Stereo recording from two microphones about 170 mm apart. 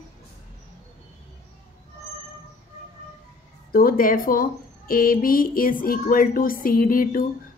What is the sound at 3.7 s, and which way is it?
A woman's voice, 60° left (ahead or behind).